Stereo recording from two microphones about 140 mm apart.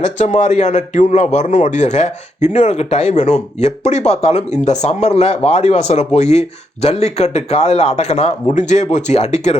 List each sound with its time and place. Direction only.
0.0 s a man's voice: 60° left (ahead or behind)